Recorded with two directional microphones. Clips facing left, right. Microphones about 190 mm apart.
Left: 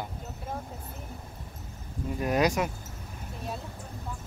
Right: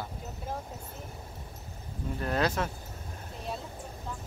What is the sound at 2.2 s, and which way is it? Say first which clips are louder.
Speech: left 4 dB; 15° left (ahead or behind).